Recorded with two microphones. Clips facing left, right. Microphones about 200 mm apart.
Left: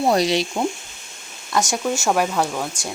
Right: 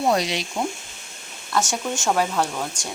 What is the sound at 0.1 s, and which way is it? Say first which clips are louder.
Speech: left 5 dB; 35° left (ahead or behind).